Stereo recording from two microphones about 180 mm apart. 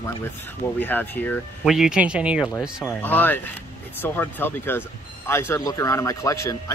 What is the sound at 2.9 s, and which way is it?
Speech, 10° left (ahead or behind).